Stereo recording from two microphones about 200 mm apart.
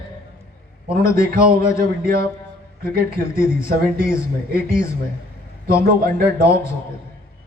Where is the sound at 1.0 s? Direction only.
50° right (ahead or behind).